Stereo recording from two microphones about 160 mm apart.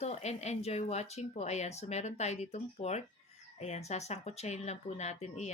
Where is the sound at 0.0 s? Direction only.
45° left (ahead or behind).